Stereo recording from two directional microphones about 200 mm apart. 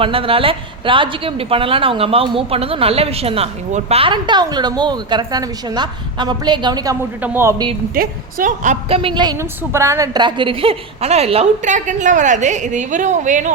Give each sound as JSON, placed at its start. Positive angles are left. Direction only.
{"t": 0.0, "sound": "a woman's voice", "side_deg": -25}
{"t": 7.9, "sound": "a woman's voice", "side_deg": -40}